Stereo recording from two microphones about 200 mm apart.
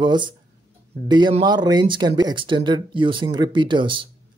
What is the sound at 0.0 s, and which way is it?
Speech, 25° right (ahead or behind).